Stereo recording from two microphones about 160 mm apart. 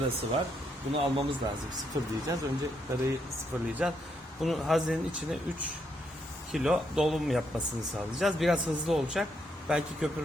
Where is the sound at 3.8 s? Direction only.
5° right (ahead or behind).